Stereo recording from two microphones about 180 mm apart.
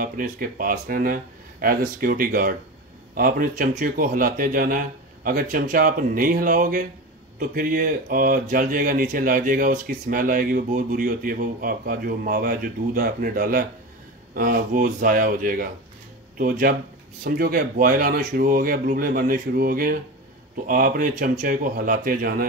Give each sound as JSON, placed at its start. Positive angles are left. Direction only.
{"t": 0.0, "sound": "speech", "side_deg": -50}